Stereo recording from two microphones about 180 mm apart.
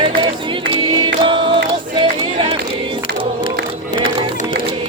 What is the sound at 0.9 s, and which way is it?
Choir, 25° right (ahead or behind).